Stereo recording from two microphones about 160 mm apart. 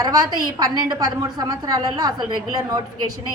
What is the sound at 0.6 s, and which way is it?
A woman's voice, 25° right (ahead or behind).